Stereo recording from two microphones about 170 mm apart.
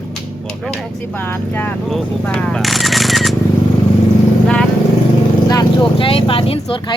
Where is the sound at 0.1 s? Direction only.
5° left (ahead or behind).